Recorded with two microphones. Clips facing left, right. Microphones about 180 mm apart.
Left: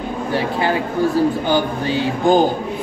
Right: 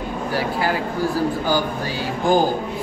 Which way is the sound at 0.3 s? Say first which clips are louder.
Left 3 dB; 25° left (ahead or behind).